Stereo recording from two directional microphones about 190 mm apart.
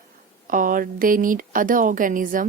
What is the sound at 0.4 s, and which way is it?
Speech, 45° right (ahead or behind).